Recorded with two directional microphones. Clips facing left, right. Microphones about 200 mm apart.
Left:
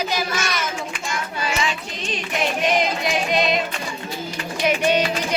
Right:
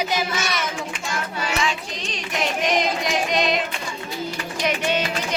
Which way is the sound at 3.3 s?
5° left (ahead or behind).